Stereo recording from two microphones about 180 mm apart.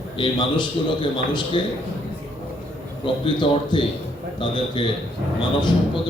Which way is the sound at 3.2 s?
25° left (ahead or behind).